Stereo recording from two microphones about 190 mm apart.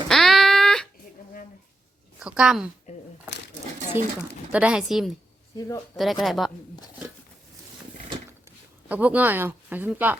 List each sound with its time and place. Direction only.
0.1 s a sound: centre (ahead or behind)
2.1 s speech: 5° right (ahead or behind)
2.9 s a sound: 35° left (ahead or behind)
4.5 s speech: 5° right (ahead or behind)
5.5 s speech: 15° left (ahead or behind)
6.0 s speech: centre (ahead or behind)
8.9 s speech: 10° right (ahead or behind)